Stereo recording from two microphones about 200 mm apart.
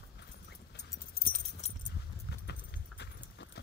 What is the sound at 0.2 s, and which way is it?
Dog, 55° left (ahead or behind).